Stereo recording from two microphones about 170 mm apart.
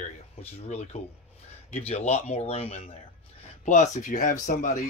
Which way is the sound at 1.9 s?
40° left (ahead or behind).